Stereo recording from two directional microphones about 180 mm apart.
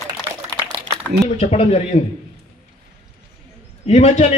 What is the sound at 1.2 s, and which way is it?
Speech, 40° left (ahead or behind).